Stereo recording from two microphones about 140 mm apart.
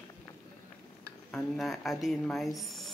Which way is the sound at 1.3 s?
Centre (ahead or behind).